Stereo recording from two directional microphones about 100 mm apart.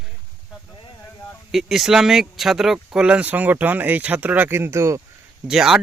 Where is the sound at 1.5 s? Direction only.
Centre (ahead or behind); by 5.0 s 30° right (ahead or behind).